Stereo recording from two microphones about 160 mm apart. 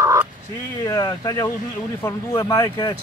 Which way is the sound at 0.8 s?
20° left (ahead or behind).